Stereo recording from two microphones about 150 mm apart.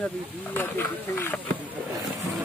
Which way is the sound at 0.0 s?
10° left (ahead or behind).